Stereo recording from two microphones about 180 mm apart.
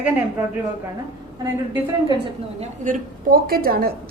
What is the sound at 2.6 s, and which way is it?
A woman's voice, 45° right (ahead or behind).